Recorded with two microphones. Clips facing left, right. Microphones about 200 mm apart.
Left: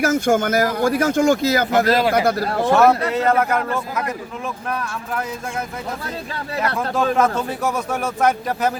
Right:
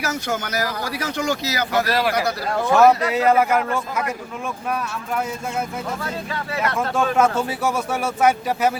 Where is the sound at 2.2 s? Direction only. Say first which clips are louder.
Left 5 dB; 50° left (ahead or behind).